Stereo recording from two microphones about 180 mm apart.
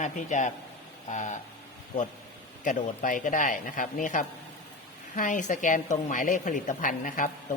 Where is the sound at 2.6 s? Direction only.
45° left (ahead or behind).